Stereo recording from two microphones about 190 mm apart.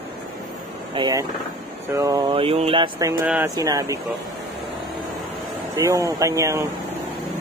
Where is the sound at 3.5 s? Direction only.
20° right (ahead or behind).